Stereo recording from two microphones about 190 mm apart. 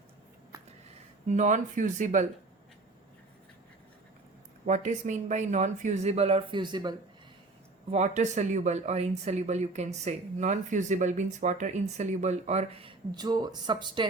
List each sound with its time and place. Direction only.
1.3 s speech: 40° right (ahead or behind)
4.6 s speech: 40° right (ahead or behind); by 6.9 s 25° right (ahead or behind)
7.9 s speech: 35° right (ahead or behind)